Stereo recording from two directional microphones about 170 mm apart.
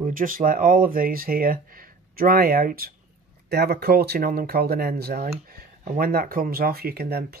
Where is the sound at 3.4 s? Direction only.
70° right (ahead or behind).